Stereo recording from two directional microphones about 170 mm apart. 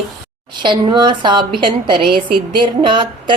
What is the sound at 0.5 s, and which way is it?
A woman's voice, 30° right (ahead or behind).